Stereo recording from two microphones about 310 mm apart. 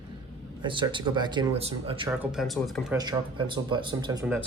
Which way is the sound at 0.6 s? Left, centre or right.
Centre.